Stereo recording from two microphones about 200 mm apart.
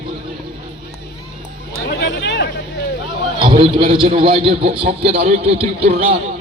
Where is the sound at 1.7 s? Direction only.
55° left (ahead or behind).